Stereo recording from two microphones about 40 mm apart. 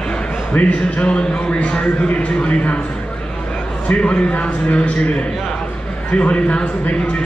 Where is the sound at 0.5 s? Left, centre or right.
Left.